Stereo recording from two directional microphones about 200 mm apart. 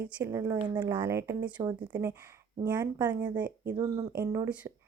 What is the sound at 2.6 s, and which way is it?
Speech, 20° right (ahead or behind).